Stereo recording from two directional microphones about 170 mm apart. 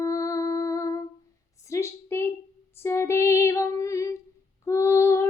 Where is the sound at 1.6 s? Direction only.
15° left (ahead or behind).